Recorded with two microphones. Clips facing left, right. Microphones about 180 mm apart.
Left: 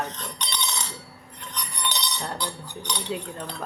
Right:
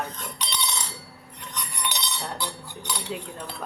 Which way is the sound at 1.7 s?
5° right (ahead or behind).